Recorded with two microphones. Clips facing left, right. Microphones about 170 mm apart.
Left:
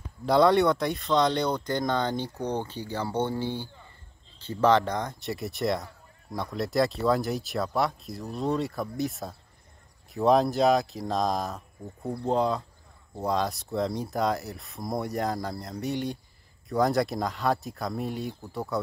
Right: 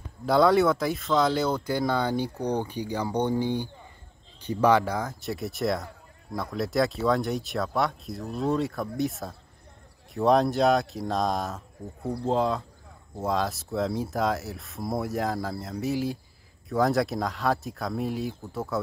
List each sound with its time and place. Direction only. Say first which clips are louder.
0.2 s speech: even; centre (ahead or behind)